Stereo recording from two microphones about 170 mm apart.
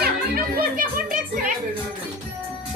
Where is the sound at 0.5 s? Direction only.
50° right (ahead or behind).